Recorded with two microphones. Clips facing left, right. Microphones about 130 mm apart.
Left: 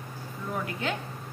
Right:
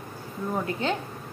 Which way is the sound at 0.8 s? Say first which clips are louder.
Right 4 dB; 30° right (ahead or behind).